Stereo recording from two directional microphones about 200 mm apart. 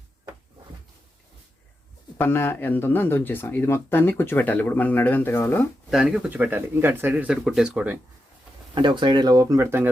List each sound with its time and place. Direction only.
2.1 s speech: 10° left (ahead or behind)
5.9 s speech: centre (ahead or behind)
8.7 s speech: 25° right (ahead or behind)